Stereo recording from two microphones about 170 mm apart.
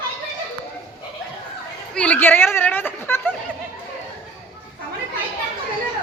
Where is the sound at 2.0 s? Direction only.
10° left (ahead or behind).